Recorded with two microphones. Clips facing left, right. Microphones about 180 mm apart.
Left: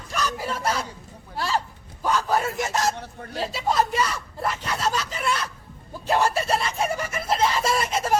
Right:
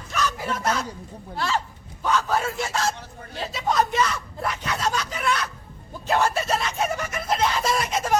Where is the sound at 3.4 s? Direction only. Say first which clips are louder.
Even; 5° left (ahead or behind).